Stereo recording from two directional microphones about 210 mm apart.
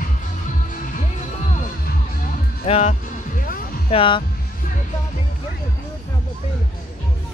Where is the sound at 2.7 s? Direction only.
30° left (ahead or behind).